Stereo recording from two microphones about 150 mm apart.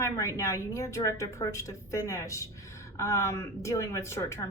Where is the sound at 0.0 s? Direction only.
20° left (ahead or behind).